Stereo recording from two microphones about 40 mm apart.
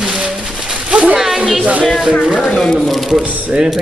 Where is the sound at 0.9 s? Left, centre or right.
Right.